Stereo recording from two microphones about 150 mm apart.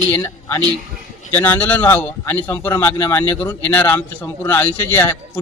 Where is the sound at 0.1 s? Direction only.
20° left (ahead or behind).